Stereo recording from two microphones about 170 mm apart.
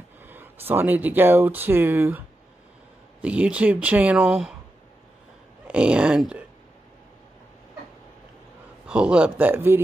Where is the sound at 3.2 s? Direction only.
5° right (ahead or behind).